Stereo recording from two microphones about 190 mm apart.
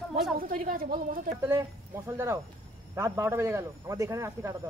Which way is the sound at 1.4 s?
15° right (ahead or behind).